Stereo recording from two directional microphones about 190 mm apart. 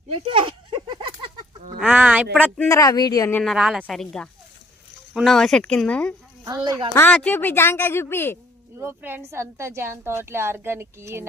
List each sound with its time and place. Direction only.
0.1 s a sound: 30° right (ahead or behind)
1.8 s speech: 10° right (ahead or behind)
2.6 s speech: 15° left (ahead or behind)
3.4 s speech: centre (ahead or behind)
6.7 s speech: 25° right (ahead or behind)
6.9 s speech: 10° left (ahead or behind)
8.8 s a woman's voice: 10° right (ahead or behind)